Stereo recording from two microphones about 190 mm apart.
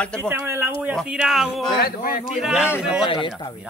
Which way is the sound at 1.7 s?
50° left (ahead or behind).